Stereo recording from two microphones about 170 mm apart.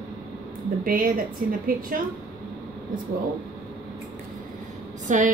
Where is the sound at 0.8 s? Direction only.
55° right (ahead or behind).